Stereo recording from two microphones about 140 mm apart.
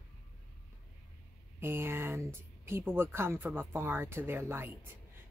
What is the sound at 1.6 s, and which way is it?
Speech, 15° right (ahead or behind).